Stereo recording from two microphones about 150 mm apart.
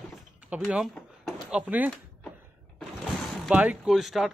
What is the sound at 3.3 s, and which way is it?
Speech, 5° right (ahead or behind).